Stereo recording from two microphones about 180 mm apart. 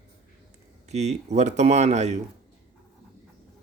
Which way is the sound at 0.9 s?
40° right (ahead or behind).